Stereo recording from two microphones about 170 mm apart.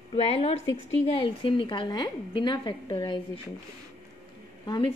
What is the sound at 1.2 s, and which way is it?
A woman's voice, 30° left (ahead or behind).